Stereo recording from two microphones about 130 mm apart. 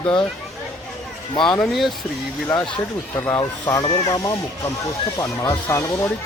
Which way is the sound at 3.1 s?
20° left (ahead or behind).